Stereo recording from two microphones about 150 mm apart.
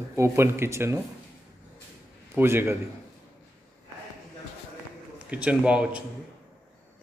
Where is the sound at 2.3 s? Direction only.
15° right (ahead or behind).